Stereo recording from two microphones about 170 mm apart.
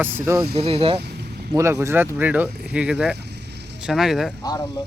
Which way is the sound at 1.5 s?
15° right (ahead or behind).